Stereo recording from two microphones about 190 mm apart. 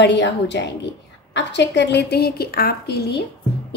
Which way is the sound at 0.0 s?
65° left (ahead or behind).